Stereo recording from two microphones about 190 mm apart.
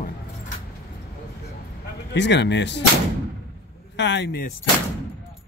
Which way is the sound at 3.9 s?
70° left (ahead or behind).